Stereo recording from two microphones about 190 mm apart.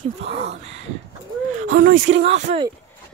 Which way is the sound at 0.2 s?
35° right (ahead or behind).